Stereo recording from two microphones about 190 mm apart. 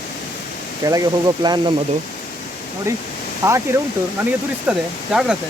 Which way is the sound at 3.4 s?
15° right (ahead or behind).